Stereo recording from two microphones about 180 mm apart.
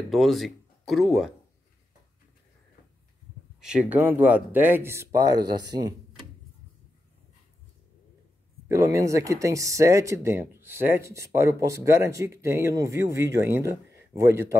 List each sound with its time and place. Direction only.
0.1 s speech: centre (ahead or behind)
3.6 s speech: 5° right (ahead or behind)
8.6 s speech: 15° right (ahead or behind)